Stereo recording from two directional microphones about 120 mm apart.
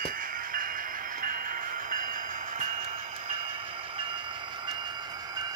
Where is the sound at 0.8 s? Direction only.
90° right.